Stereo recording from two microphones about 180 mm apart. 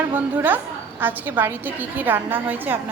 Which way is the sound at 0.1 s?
10° right (ahead or behind).